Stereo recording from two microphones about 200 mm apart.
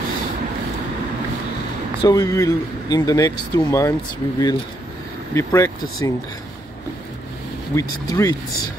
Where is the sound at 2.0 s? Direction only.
20° left (ahead or behind).